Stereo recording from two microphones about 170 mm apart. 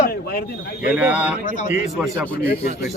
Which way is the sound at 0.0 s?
65° left (ahead or behind).